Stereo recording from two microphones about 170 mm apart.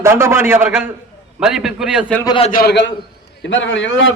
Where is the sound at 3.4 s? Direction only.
90° left.